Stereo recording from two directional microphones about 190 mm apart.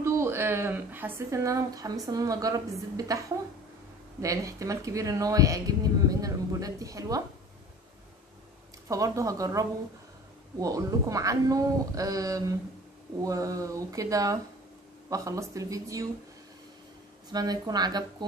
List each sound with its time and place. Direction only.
0.0 s a woman's voice: 15° right (ahead or behind)
4.2 s speech: 15° right (ahead or behind)
8.8 s speech: 15° right (ahead or behind)
17.3 s speech: 20° right (ahead or behind)